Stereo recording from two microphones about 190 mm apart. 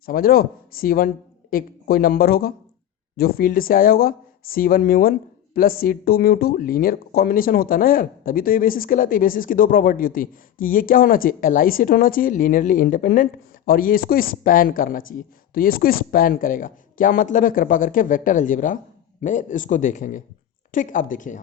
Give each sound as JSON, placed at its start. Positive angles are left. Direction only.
{"t": 0.0, "sound": "speech", "side_deg": 50}